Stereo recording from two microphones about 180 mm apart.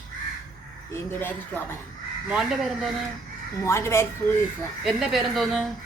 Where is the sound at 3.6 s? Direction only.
15° left (ahead or behind).